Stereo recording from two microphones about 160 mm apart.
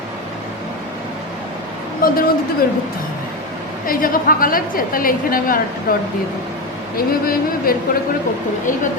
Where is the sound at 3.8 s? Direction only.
60° left (ahead or behind).